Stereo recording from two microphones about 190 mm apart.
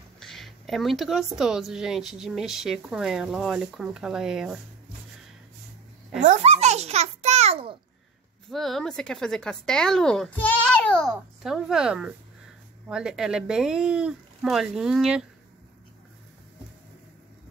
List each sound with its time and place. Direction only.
0.2 s a woman's voice: centre (ahead or behind)
6.2 s babbling: 35° right (ahead or behind)
8.5 s a woman's voice: centre (ahead or behind)